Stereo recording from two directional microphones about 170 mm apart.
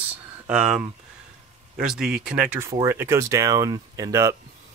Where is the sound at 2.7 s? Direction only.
15° right (ahead or behind).